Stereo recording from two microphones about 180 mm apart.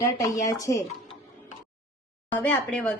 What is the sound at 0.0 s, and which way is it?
Speech, 20° left (ahead or behind).